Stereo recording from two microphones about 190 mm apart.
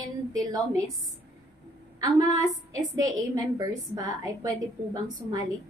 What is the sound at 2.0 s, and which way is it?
A woman's voice, 20° right (ahead or behind).